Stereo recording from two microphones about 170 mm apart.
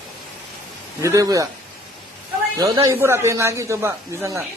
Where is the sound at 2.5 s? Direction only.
20° right (ahead or behind).